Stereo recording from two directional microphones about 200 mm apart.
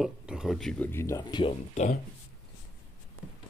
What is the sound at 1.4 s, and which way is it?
Speech, 40° left (ahead or behind).